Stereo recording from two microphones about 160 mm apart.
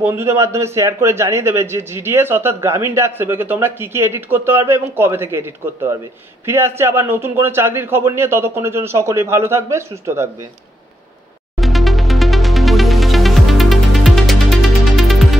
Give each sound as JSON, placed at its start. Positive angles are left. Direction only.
{"t": 0.0, "sound": "a man's voice", "side_deg": -15}
{"t": 11.5, "sound": "music", "side_deg": 0}